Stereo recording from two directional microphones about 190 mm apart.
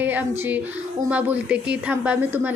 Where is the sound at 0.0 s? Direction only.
10° right (ahead or behind).